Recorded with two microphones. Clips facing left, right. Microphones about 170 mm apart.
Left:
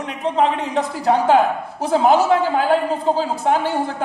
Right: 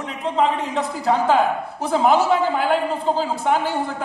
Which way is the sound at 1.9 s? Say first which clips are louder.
Left 2 dB; 35° left (ahead or behind).